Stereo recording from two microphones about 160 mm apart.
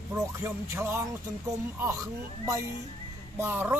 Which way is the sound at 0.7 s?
15° right (ahead or behind).